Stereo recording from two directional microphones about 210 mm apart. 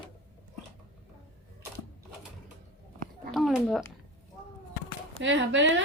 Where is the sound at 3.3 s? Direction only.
Centre (ahead or behind).